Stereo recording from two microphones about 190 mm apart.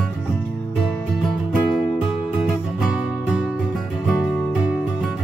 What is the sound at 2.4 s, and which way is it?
Music, centre (ahead or behind).